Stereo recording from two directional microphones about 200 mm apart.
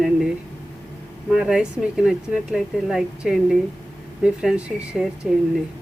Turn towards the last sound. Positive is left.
turn(degrees=0)  # may be behind; listen again after turning